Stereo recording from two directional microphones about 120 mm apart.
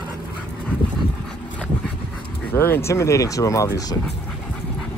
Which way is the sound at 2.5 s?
20° left (ahead or behind).